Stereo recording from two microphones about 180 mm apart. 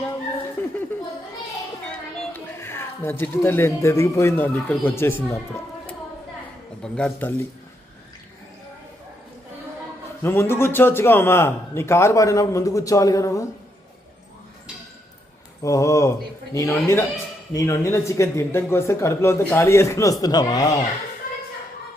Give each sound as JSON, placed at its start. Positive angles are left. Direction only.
{"t": 0.6, "sound": "chuckle", "side_deg": 10}
{"t": 2.3, "sound": "speech", "side_deg": 15}
{"t": 6.8, "sound": "speech", "side_deg": 5}
{"t": 10.2, "sound": "speech", "side_deg": 15}
{"t": 15.6, "sound": "speech", "side_deg": 20}
{"t": 21.2, "sound": "a sound", "side_deg": 50}